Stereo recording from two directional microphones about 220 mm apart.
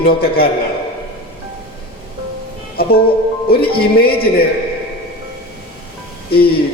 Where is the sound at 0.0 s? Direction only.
45° left (ahead or behind).